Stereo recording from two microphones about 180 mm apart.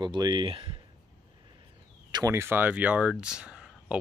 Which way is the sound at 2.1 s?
15° right (ahead or behind).